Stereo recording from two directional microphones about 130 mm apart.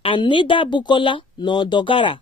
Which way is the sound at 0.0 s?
40° left (ahead or behind).